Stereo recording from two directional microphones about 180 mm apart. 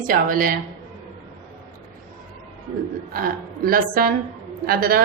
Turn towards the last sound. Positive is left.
turn(degrees=-55)  # may be behind; listen again after turning